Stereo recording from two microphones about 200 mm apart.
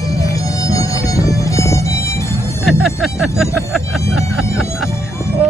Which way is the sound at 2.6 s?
Centre (ahead or behind).